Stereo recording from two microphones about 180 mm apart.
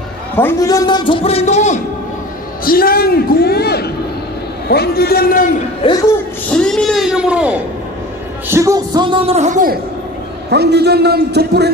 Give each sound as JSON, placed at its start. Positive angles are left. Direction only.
{"t": 0.4, "sound": "a man's voice", "side_deg": 15}
{"t": 2.6, "sound": "a man's voice", "side_deg": 55}
{"t": 5.8, "sound": "speech", "side_deg": 25}
{"t": 6.5, "sound": "a sound", "side_deg": 0}
{"t": 8.5, "sound": "a man's voice", "side_deg": -15}
{"t": 10.5, "sound": "speech", "side_deg": -65}